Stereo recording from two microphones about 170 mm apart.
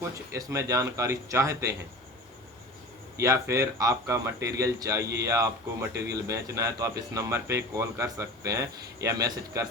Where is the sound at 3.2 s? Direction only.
15° right (ahead or behind).